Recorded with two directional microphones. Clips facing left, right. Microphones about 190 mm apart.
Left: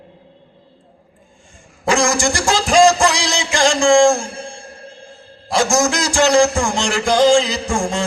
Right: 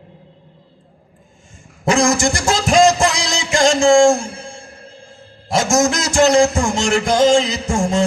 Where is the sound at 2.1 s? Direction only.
30° left (ahead or behind).